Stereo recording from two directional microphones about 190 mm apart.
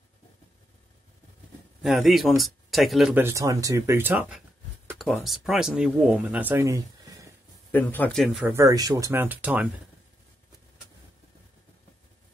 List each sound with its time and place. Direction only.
1.8 s speech: centre (ahead or behind)
4.9 s speech: centre (ahead or behind)
7.7 s speech: 10° left (ahead or behind); by 9.7 s 5° right (ahead or behind)